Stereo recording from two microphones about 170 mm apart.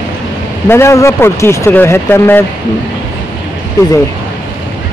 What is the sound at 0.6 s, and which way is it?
Speech, 15° left (ahead or behind).